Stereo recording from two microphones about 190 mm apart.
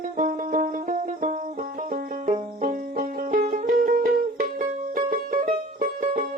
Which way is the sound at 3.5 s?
40° right (ahead or behind).